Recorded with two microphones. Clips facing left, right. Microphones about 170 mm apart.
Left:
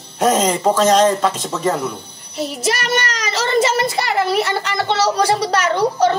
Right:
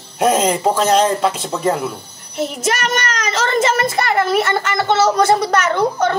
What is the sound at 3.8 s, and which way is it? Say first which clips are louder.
Speech: right 1 dB; 50° right (ahead or behind).